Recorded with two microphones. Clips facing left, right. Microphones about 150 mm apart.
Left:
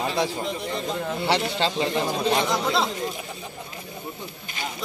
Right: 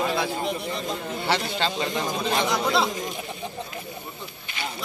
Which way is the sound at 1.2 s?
25° left (ahead or behind).